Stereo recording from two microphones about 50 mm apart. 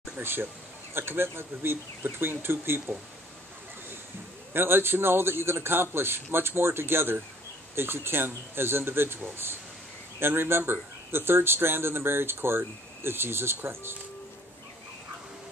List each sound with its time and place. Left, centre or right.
0.2 s speech: right
4.6 s speech: right